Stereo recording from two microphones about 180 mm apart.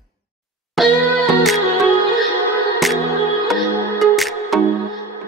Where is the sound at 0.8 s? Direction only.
Centre (ahead or behind).